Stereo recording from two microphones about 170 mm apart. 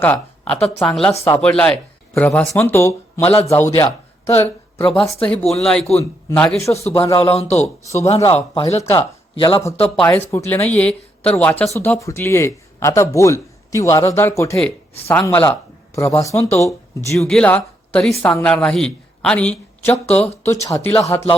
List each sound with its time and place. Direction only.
0.0 s speech: 10° left (ahead or behind)
4.3 s speech: 40° left (ahead or behind)
5.2 s speech: 5° left (ahead or behind)
6.7 s speech: 35° left (ahead or behind)
8.8 s speech: 20° left (ahead or behind)
9.3 s speech: 30° left (ahead or behind)
9.9 s speech: 5° left (ahead or behind)
17.2 s speech: 5° left (ahead or behind)